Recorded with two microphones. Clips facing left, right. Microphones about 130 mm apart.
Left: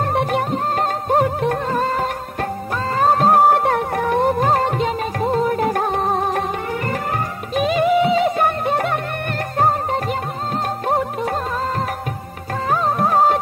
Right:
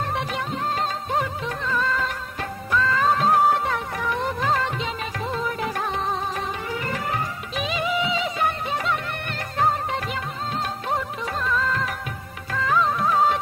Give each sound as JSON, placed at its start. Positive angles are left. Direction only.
{"t": 0.0, "sound": "music", "side_deg": 50}
{"t": 7.5, "sound": "music", "side_deg": 50}
{"t": 10.9, "sound": "music", "side_deg": 50}
{"t": 12.5, "sound": "music of bollywood", "side_deg": 45}